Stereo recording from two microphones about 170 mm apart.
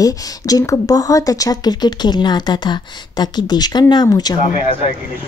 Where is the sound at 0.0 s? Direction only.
20° left (ahead or behind).